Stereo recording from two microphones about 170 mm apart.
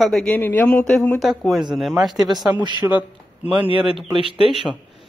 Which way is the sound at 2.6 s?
25° right (ahead or behind).